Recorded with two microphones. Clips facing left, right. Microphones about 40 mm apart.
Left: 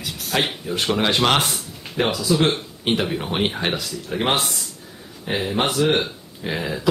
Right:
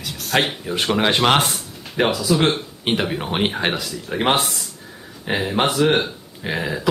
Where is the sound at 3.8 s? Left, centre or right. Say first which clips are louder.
Right 2 dB; centre.